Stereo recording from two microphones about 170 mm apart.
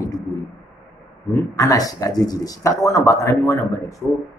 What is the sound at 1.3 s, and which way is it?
A man's voice, 20° left (ahead or behind).